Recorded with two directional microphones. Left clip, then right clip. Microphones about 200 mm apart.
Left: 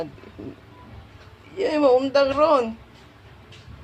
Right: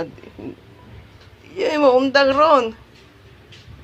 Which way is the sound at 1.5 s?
20° right (ahead or behind).